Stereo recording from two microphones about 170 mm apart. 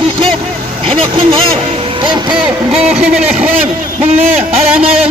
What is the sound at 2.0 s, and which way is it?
Speech, 25° right (ahead or behind).